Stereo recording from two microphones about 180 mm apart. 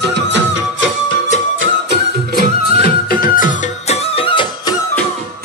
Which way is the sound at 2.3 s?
60° left (ahead or behind).